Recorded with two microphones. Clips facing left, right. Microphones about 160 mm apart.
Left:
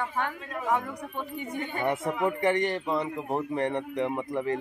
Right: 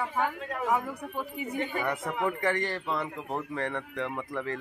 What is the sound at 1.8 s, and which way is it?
Speech, 20° left (ahead or behind).